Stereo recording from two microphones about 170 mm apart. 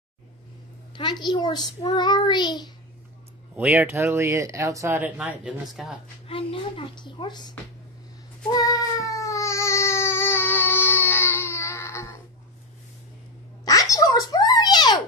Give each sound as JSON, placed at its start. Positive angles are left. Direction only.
{"t": 0.9, "sound": "a woman's voice", "side_deg": 25}
{"t": 3.5, "sound": "speech", "side_deg": -10}
{"t": 6.2, "sound": "a woman's voice", "side_deg": 30}
{"t": 8.5, "sound": "baby cry", "side_deg": 20}
{"t": 13.7, "sound": "a sound", "side_deg": 20}